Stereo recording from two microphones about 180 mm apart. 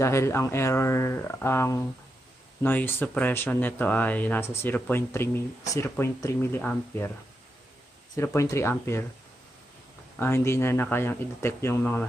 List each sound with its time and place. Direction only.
0.0 s speech: 15° left (ahead or behind)
8.2 s speech: 15° left (ahead or behind)
10.1 s speech: 15° left (ahead or behind)